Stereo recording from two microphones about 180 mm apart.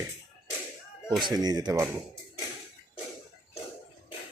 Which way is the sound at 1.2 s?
20° right (ahead or behind).